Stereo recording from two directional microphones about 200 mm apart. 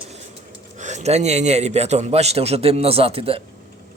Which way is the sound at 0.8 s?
35° right (ahead or behind).